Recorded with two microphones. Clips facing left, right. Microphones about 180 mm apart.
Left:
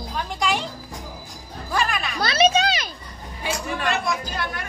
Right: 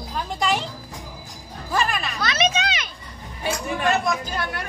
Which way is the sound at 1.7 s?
Centre (ahead or behind).